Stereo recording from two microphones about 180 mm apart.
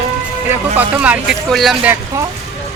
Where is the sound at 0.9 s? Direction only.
5° right (ahead or behind).